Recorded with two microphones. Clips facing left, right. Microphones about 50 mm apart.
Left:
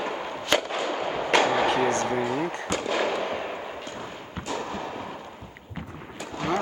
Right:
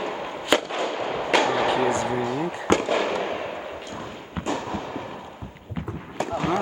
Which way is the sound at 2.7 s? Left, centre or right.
Right.